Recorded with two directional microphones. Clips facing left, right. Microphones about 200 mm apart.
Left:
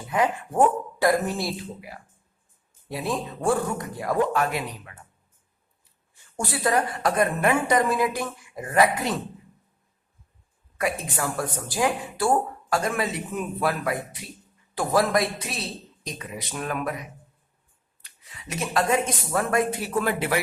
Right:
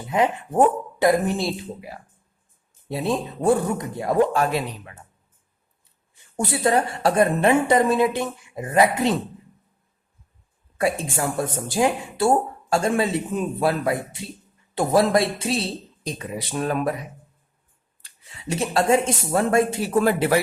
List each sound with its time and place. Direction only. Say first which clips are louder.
0.1 s a woman's voice: right 3 dB; 20° right (ahead or behind)
6.1 s a woman's voice: right 4 dB; 20° right (ahead or behind)
10.8 s a woman's voice: right 4 dB; 30° right (ahead or behind)